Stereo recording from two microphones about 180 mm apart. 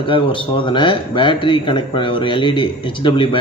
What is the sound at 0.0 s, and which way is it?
A man's voice, 30° left (ahead or behind).